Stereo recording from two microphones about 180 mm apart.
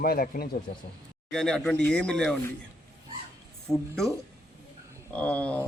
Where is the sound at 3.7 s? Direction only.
Centre (ahead or behind).